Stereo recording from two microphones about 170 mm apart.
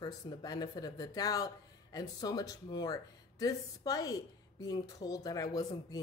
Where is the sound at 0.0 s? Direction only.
20° left (ahead or behind).